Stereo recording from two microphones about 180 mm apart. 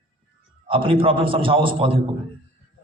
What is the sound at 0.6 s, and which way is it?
A man's voice, 30° right (ahead or behind).